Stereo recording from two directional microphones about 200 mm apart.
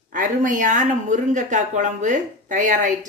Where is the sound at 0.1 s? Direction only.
40° right (ahead or behind).